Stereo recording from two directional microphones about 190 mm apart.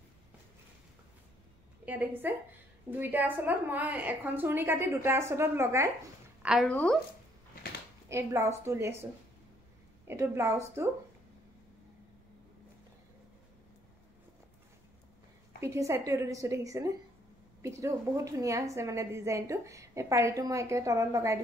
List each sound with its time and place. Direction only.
1.9 s a woman's voice: 10° right (ahead or behind)
6.4 s a woman's voice: 5° right (ahead or behind)
8.1 s a woman's voice: 15° right (ahead or behind)
10.0 s a woman's voice: 15° right (ahead or behind)
15.6 s a woman's voice: 15° right (ahead or behind)